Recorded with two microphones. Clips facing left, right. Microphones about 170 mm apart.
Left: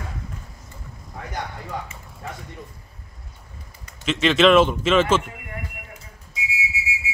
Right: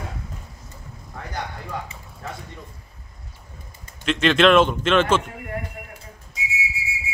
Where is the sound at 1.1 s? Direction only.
15° left (ahead or behind).